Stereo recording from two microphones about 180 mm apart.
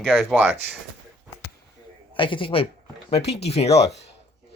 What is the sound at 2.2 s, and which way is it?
Speech, 30° left (ahead or behind).